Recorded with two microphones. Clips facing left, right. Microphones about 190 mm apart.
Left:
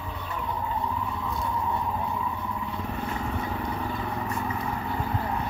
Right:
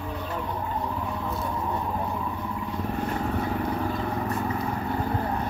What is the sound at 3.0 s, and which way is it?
Vehicle, 50° right (ahead or behind).